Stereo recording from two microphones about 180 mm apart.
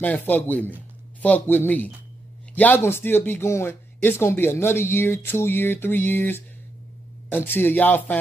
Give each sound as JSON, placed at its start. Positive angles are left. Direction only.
{"t": 0.0, "sound": "speech", "side_deg": 10}